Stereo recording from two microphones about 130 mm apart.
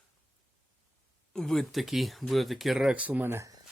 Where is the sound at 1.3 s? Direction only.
5° left (ahead or behind); by 3.6 s 25° right (ahead or behind).